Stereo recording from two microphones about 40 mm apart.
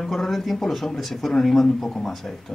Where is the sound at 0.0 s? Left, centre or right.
Centre.